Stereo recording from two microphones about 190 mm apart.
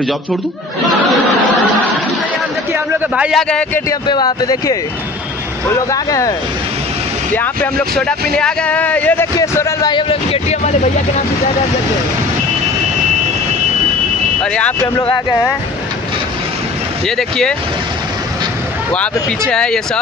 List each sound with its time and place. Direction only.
2.7 s speech: 5° right (ahead or behind)
4.1 s speech: 20° left (ahead or behind)
5.9 s a man's voice: 20° left (ahead or behind)
7.3 s a man's voice: 5° left (ahead or behind); by 10.9 s 35° left (ahead or behind)
14.4 s speech: 5° left (ahead or behind)
15.0 s speech: 20° left (ahead or behind)
17.2 s speech: 5° left (ahead or behind)
18.9 s speech: 5° left (ahead or behind)